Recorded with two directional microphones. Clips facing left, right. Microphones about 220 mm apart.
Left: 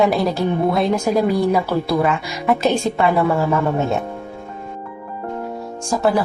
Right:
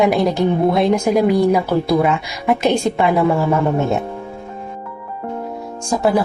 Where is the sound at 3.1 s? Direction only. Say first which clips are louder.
Right 2 dB; 10° right (ahead or behind).